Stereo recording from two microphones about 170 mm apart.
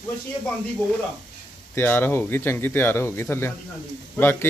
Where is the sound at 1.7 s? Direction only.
10° left (ahead or behind).